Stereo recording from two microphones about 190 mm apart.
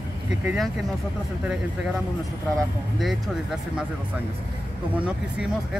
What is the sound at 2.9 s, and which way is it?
Speech, centre (ahead or behind).